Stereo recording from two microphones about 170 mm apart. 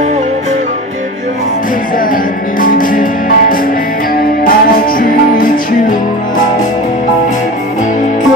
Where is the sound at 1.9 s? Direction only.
55° left (ahead or behind).